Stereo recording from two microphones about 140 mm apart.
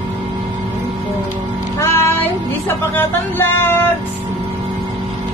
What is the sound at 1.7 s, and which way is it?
Child singing, 15° left (ahead or behind).